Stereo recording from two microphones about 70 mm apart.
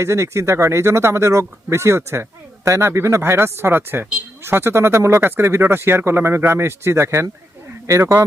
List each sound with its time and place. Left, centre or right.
0.0 s speech: right